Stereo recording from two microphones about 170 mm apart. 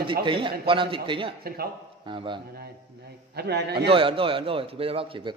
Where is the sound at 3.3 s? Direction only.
75° right (ahead or behind).